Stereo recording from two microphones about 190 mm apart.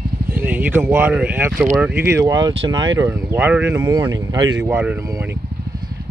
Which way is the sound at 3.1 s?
10° right (ahead or behind).